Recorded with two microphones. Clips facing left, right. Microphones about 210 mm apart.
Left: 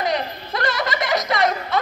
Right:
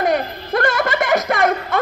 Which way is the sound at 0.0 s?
50° right (ahead or behind).